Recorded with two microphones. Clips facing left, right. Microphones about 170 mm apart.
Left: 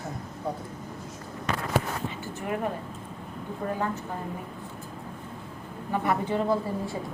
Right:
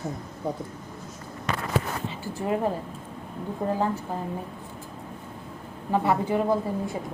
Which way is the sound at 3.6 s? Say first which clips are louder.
Right 4 dB; 30° right (ahead or behind).